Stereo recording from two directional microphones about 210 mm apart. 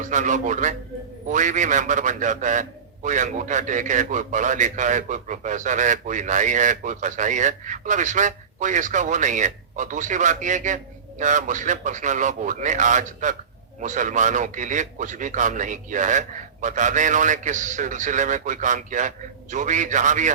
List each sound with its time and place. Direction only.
0.0 s a man's voice: 35° right (ahead or behind)